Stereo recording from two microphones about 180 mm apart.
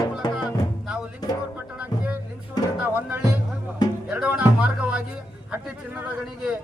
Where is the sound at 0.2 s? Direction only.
25° left (ahead or behind).